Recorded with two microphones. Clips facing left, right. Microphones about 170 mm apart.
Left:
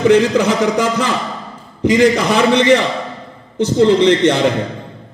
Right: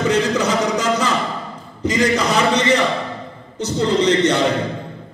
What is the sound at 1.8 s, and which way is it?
A man's voice, 55° left (ahead or behind).